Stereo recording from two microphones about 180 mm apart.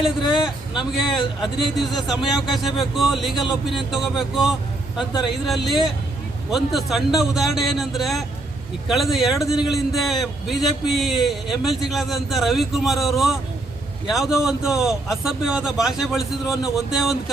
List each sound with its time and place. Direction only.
0.0 s speech: 5° right (ahead or behind)
5.6 s speech: centre (ahead or behind)